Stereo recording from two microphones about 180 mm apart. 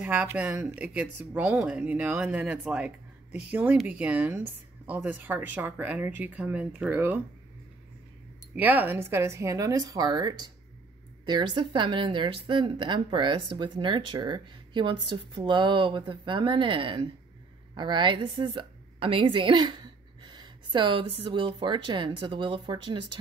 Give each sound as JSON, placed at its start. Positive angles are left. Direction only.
{"t": 0.0, "sound": "a woman's voice", "side_deg": -10}
{"t": 8.5, "sound": "a woman's voice", "side_deg": -10}